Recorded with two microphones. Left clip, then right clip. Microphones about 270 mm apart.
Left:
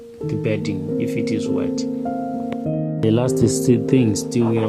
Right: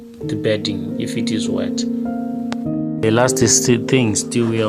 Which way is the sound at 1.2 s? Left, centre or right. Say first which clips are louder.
Even; centre.